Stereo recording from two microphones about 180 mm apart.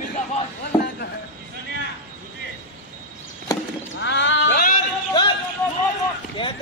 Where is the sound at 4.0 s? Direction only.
85° left.